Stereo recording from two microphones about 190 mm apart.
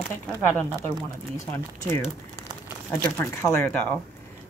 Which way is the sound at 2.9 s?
10° left (ahead or behind).